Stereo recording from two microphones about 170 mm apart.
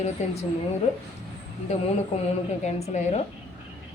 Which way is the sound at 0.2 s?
40° left (ahead or behind).